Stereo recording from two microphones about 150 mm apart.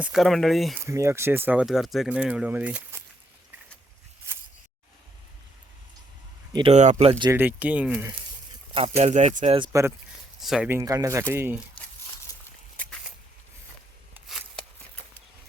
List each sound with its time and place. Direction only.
0.0 s speech: centre (ahead or behind)
0.9 s speech: 20° right (ahead or behind)
1.6 s speech: centre (ahead or behind)
6.5 s speech: 35° right (ahead or behind)
7.3 s speech: 15° right (ahead or behind)
9.0 s speech: 50° right (ahead or behind)
10.4 s speech: centre (ahead or behind)
10.7 s speech: 20° right (ahead or behind)
12.8 s a sound: 10° left (ahead or behind)